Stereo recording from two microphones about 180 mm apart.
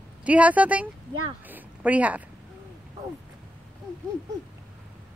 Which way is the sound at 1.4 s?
10° right (ahead or behind).